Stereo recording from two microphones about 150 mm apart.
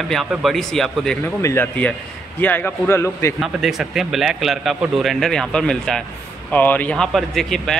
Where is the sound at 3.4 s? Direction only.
Centre (ahead or behind).